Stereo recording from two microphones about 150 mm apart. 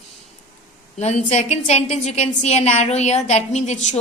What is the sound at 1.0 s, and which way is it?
A woman's voice, 50° left (ahead or behind).